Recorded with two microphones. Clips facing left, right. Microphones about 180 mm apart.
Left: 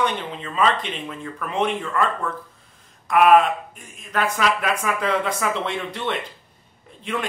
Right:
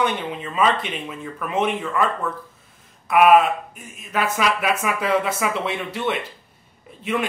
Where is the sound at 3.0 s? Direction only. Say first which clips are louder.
Right 1 dB; 5° right (ahead or behind).